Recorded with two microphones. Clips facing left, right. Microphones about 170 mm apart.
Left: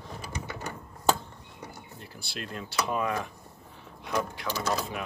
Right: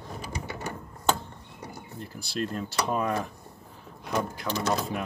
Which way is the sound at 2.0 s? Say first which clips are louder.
Right 9 dB; 40° right (ahead or behind).